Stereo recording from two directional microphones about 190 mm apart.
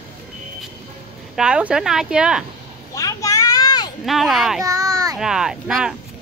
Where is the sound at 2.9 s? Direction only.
15° left (ahead or behind).